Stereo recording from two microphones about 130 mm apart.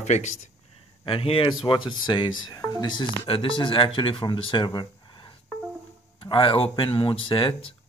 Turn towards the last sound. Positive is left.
turn(degrees=45)  # may be behind; listen again after turning